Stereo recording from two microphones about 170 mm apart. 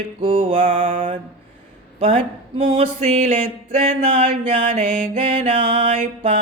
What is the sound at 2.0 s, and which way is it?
Speech, 35° right (ahead or behind).